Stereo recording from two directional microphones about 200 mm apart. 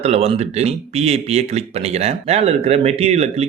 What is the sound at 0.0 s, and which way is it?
Speech, 30° right (ahead or behind).